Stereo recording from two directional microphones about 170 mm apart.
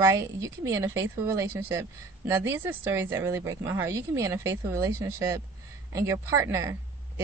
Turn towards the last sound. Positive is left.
turn(degrees=-20)  # may be behind; listen again after turning